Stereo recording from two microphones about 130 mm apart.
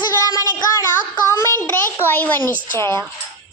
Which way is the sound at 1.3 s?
20° left (ahead or behind).